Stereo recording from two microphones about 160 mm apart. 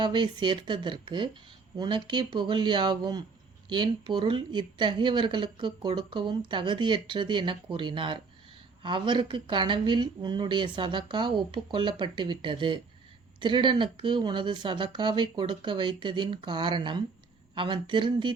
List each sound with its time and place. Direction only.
0.0 s speech: 30° right (ahead or behind)